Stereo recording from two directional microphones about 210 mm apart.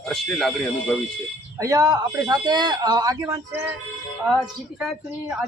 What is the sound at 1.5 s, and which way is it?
Speech, 15° right (ahead or behind).